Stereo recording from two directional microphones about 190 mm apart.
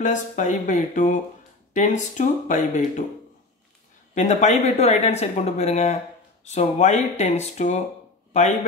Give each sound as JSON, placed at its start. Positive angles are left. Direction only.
{"t": 0.0, "sound": "speech", "side_deg": 40}
{"t": 4.1, "sound": "speech", "side_deg": 40}